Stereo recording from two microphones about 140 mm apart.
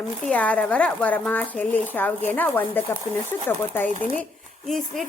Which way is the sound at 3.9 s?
65° right (ahead or behind).